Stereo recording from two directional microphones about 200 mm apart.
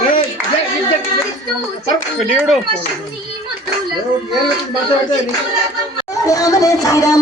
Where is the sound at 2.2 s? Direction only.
Centre (ahead or behind).